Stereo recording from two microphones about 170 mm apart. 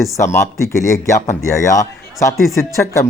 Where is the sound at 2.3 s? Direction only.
Centre (ahead or behind).